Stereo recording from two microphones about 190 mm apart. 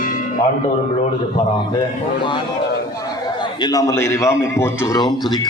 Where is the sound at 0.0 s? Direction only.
45° left (ahead or behind).